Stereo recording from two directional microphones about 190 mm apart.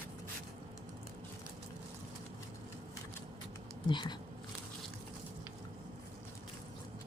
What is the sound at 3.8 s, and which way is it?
Speech, 25° left (ahead or behind).